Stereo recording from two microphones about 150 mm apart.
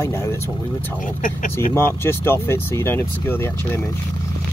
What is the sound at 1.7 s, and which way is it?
Speech, 15° left (ahead or behind).